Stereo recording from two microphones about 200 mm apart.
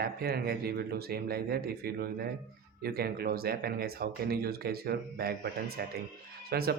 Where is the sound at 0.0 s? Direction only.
50° right (ahead or behind).